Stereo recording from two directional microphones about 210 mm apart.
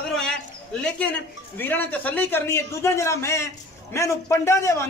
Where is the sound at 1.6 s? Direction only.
10° left (ahead or behind).